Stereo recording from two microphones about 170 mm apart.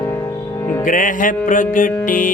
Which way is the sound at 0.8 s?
50° left (ahead or behind).